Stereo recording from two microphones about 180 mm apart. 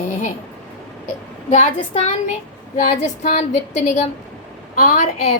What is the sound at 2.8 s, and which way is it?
Speech, 40° left (ahead or behind).